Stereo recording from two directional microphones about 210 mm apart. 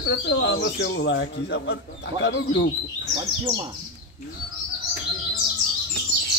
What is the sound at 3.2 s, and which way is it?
Speech, 20° right (ahead or behind).